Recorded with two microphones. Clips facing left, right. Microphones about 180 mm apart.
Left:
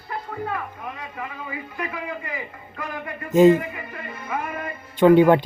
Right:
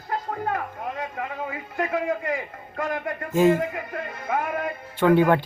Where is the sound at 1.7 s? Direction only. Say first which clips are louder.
Right 7 dB; 75° right (ahead or behind).